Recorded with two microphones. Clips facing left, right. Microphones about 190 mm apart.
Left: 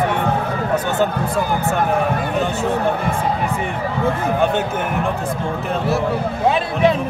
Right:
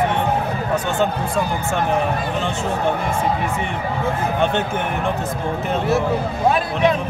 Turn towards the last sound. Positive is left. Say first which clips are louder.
# left 1 dB
turn(degrees=30)  # may be behind; listen again after turning